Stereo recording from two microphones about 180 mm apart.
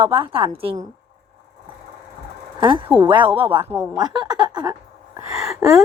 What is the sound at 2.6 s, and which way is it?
A woman's voice, 25° right (ahead or behind).